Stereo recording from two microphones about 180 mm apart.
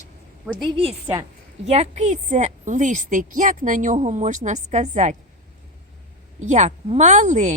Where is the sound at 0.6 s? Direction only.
30° right (ahead or behind).